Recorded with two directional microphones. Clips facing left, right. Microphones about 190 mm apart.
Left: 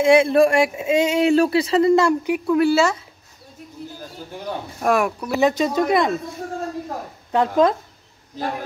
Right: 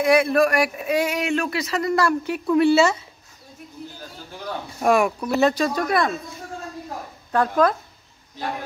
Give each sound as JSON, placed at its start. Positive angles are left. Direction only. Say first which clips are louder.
{"t": 0.0, "sound": "speech", "louder": "left 3 dB", "side_deg": 25}
{"t": 2.4, "sound": "speech", "louder": "right 1 dB", "side_deg": 0}
{"t": 4.7, "sound": "speech", "louder": "right 1 dB", "side_deg": 0}
{"t": 5.4, "sound": "speech", "louder": "left 3 dB", "side_deg": 20}
{"t": 7.3, "sound": "speech", "louder": "left 2 dB", "side_deg": 20}